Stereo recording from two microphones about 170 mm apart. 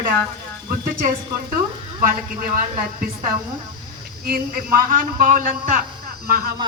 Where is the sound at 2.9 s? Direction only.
50° right (ahead or behind).